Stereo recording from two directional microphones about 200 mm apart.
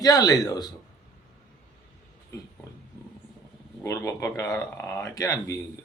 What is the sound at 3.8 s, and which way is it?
Speech, 15° left (ahead or behind).